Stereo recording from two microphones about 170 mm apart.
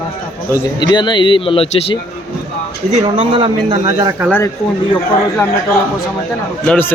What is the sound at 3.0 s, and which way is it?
Speech, 35° right (ahead or behind).